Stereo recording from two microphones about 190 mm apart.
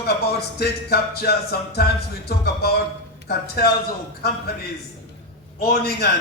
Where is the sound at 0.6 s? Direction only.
55° left (ahead or behind).